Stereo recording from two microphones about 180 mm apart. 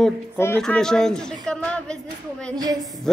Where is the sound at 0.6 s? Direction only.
5° left (ahead or behind).